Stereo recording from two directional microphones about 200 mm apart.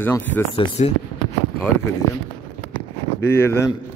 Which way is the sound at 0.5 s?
30° left (ahead or behind).